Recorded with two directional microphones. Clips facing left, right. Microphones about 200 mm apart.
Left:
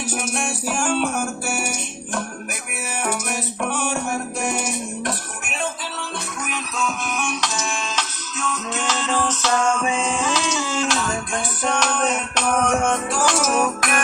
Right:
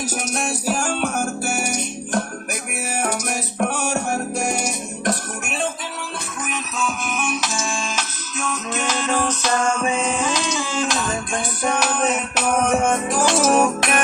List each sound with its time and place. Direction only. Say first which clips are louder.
0.1 s music: right 1 dB; 40° right (ahead or behind)
6.5 s music: right 1 dB; 5° right (ahead or behind); by 14.0 s 30° right (ahead or behind)